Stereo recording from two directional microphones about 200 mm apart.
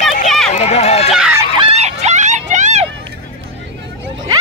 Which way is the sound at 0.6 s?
30° left (ahead or behind).